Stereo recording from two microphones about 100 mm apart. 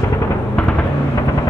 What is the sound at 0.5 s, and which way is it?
Music, 10° left (ahead or behind).